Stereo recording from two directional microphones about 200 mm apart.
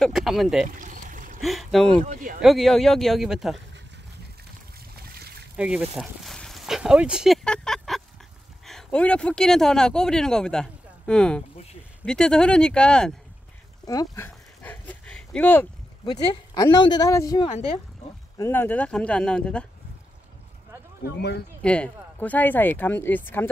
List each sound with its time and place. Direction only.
0.0 s speech: centre (ahead or behind)
0.7 s pour: 40° right (ahead or behind)
1.4 s speech: centre (ahead or behind)
5.2 s a sound: 55° right (ahead or behind)
5.6 s a sound: centre (ahead or behind)
8.6 s speech: 5° left (ahead or behind)
13.8 s dog: 15° left (ahead or behind)
16.1 s speech: 20° left (ahead or behind)
21.0 s speech: 55° left (ahead or behind)
21.6 s speech: 5° left (ahead or behind)